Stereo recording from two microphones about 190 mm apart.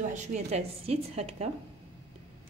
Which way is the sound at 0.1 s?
40° right (ahead or behind).